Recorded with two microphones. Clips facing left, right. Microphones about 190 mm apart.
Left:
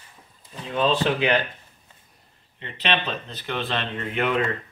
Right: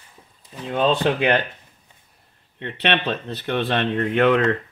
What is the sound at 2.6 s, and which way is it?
Speech, 60° right (ahead or behind).